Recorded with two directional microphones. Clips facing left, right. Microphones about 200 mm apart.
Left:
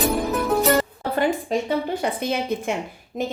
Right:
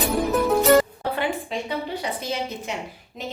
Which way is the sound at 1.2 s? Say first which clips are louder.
Left 7 dB; 45° left (ahead or behind).